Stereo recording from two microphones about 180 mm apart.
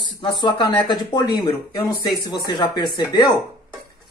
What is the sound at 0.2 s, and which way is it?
Speech, 25° left (ahead or behind).